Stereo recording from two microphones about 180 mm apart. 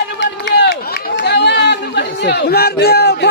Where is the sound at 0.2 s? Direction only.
80° left.